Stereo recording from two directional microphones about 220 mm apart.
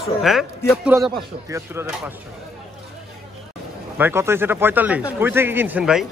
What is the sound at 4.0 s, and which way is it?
Speech, 10° right (ahead or behind).